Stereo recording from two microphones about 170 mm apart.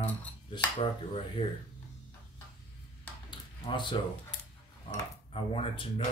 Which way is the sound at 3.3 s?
25° left (ahead or behind).